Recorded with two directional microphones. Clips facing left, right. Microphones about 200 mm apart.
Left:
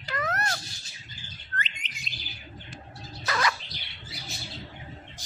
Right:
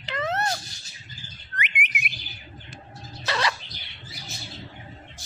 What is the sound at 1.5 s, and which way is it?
Bird, 15° right (ahead or behind).